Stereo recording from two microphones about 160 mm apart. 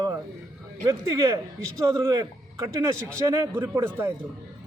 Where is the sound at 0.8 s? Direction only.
20° right (ahead or behind).